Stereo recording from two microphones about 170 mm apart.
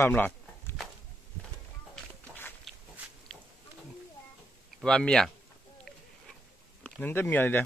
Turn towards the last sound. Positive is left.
turn(degrees=10)  # may be behind; listen again after turning